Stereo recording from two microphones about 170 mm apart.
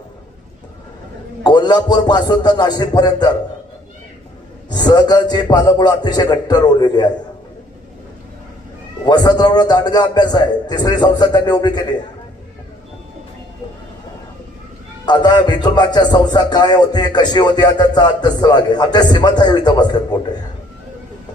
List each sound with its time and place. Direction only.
1.5 s music: 25° left (ahead or behind)
4.7 s music: 25° left (ahead or behind)
9.0 s music: 25° left (ahead or behind)
15.0 s music: 25° left (ahead or behind)